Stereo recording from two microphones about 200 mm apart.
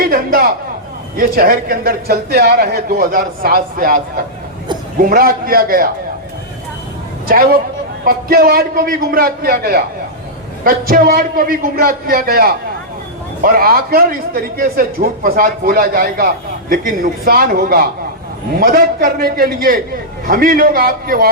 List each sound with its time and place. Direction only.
0.1 s a sound: 45° right (ahead or behind)
1.1 s a man's voice: 45° right (ahead or behind)
7.3 s a man's voice: 50° right (ahead or behind)